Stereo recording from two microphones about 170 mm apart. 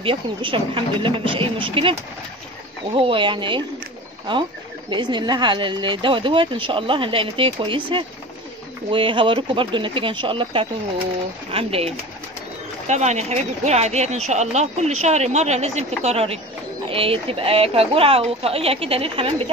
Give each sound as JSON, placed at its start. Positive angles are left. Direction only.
{"t": 0.0, "sound": "speech", "side_deg": -30}